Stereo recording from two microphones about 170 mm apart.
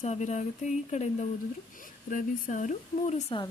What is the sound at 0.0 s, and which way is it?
Speech, 40° left (ahead or behind).